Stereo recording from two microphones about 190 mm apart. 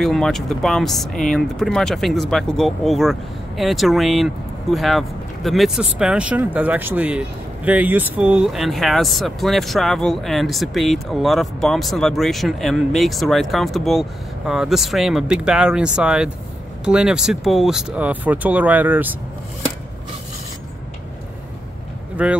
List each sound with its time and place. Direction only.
0.0 s speech: centre (ahead or behind)
22.1 s speech: 5° right (ahead or behind)